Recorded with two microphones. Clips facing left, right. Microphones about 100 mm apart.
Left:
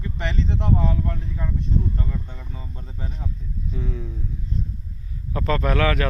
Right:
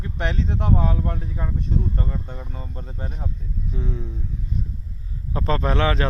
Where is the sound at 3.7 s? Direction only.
30° right (ahead or behind).